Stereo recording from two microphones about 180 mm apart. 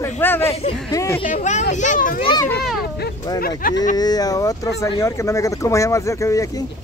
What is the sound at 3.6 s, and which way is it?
Speech, 50° left (ahead or behind).